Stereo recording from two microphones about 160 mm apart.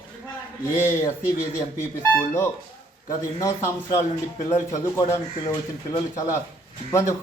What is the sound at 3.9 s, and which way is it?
Speech, 50° left (ahead or behind).